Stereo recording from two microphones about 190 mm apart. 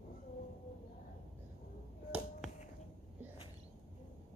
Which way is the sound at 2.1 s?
5° right (ahead or behind).